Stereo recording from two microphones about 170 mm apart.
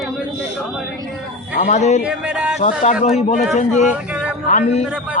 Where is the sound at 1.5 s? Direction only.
45° left (ahead or behind).